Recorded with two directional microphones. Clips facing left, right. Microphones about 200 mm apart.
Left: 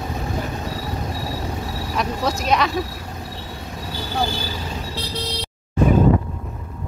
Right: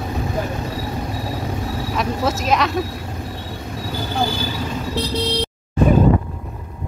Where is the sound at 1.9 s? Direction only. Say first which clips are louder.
Right 1 dB; centre (ahead or behind).